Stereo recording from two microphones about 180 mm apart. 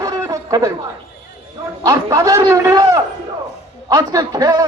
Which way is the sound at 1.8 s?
20° right (ahead or behind).